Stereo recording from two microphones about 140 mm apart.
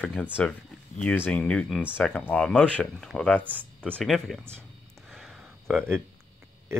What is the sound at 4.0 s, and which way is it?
Speech, centre (ahead or behind).